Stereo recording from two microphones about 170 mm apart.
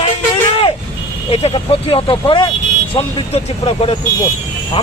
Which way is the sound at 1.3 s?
35° left (ahead or behind).